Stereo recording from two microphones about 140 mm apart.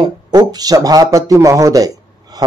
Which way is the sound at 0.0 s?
30° right (ahead or behind).